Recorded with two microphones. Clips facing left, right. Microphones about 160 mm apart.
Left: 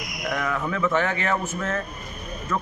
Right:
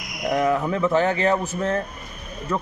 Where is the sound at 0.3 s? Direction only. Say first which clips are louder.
Right 6 dB; 30° right (ahead or behind).